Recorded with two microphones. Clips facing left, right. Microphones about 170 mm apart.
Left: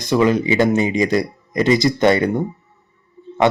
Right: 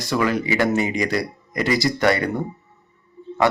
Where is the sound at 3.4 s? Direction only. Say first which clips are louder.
Left 3 dB; 20° left (ahead or behind).